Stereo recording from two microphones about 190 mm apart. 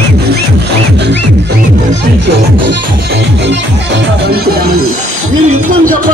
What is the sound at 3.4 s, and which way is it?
Music, 60° right (ahead or behind).